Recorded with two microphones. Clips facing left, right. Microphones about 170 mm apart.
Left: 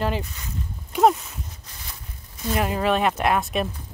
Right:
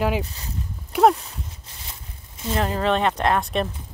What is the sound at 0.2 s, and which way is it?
Speech, 35° right (ahead or behind).